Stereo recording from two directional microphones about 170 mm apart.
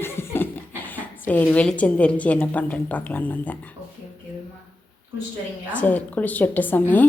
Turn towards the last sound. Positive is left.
turn(degrees=10)  # may be behind; listen again after turning